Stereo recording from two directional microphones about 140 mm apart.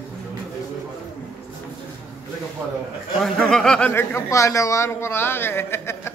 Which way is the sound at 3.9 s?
20° left (ahead or behind).